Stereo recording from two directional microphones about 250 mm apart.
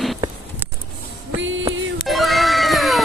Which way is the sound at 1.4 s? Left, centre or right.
Right.